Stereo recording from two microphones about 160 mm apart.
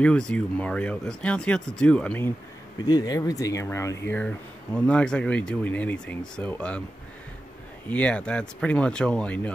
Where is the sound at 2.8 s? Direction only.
25° left (ahead or behind); by 6.8 s 5° left (ahead or behind).